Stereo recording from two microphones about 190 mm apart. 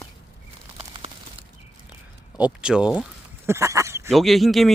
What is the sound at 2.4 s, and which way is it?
Speech, 5° right (ahead or behind).